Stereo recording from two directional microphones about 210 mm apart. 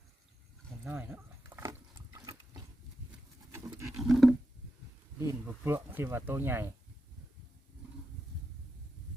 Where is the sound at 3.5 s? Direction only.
15° right (ahead or behind).